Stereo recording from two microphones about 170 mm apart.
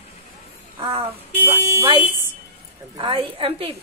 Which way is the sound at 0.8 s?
25° right (ahead or behind).